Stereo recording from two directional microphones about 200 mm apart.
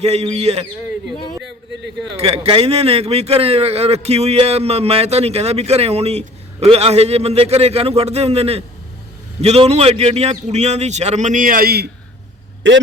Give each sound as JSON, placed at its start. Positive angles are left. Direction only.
{"t": 0.0, "sound": "a man's voice", "side_deg": -30}
{"t": 2.1, "sound": "a man's voice", "side_deg": -30}